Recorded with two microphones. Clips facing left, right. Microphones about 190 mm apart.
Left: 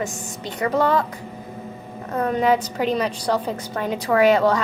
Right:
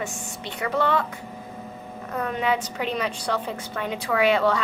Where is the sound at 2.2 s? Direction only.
40° left (ahead or behind).